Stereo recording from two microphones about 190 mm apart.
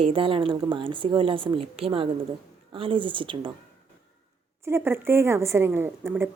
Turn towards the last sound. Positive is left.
turn(degrees=-10)  # may be behind; listen again after turning